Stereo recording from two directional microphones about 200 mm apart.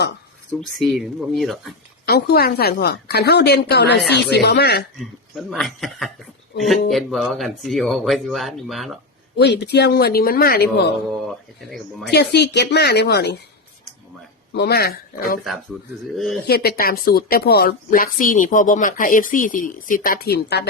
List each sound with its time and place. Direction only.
0.6 s speech: centre (ahead or behind)
2.0 s a woman's voice: 55° left (ahead or behind)
4.9 s speech: centre (ahead or behind)
9.4 s a woman's voice: 55° left (ahead or behind)
11.3 s speech: centre (ahead or behind)
12.1 s speech: 55° left (ahead or behind)
14.5 s a woman's voice: 55° left (ahead or behind)
16.1 s speech: centre (ahead or behind)
16.5 s a woman's voice: 50° left (ahead or behind)